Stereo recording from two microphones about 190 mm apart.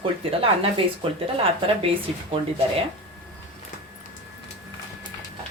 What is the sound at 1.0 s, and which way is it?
Speech, 30° right (ahead or behind).